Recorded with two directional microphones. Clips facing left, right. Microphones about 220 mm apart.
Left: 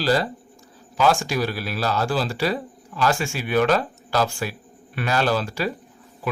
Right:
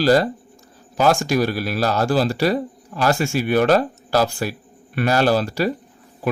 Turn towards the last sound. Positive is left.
turn(degrees=-40)  # may be behind; listen again after turning